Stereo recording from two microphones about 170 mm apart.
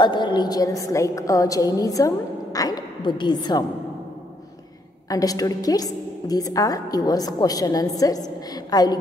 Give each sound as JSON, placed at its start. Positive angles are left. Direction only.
{"t": 0.0, "sound": "a woman's voice", "side_deg": 25}
{"t": 5.1, "sound": "a woman's voice", "side_deg": 20}